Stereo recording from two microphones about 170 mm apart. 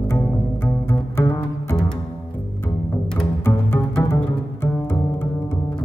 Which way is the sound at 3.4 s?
15° left (ahead or behind).